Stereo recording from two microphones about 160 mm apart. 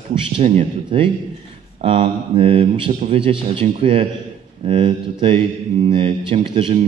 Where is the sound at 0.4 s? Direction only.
40° right (ahead or behind).